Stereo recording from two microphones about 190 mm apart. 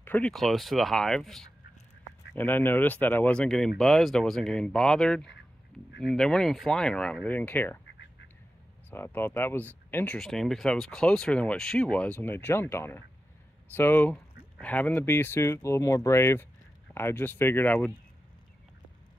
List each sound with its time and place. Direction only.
0.0 s speech: 10° left (ahead or behind)
8.9 s speech: 10° left (ahead or behind)